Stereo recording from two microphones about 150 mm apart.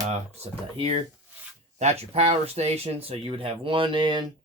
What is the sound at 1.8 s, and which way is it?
Speech, 45° right (ahead or behind).